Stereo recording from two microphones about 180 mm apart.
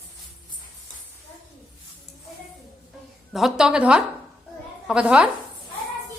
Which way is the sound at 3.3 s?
Centre (ahead or behind).